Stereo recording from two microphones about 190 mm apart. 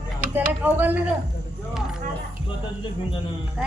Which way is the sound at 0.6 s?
10° right (ahead or behind).